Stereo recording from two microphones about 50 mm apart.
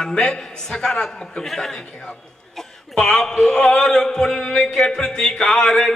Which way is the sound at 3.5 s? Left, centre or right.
Centre.